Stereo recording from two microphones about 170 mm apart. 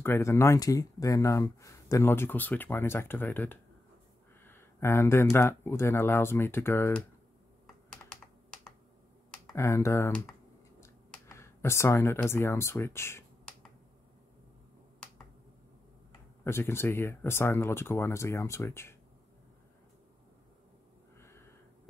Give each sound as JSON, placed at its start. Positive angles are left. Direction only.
{"t": 0.0, "sound": "speech", "side_deg": 15}
{"t": 9.6, "sound": "speech", "side_deg": 15}
{"t": 16.4, "sound": "speech", "side_deg": 15}
{"t": 21.2, "sound": "a sound", "side_deg": 15}